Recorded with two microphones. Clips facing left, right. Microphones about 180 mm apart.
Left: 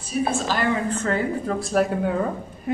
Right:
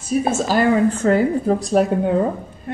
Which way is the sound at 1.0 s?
35° right (ahead or behind).